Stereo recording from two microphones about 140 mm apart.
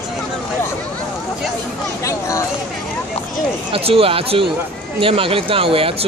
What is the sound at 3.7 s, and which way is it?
Speech, 40° right (ahead or behind).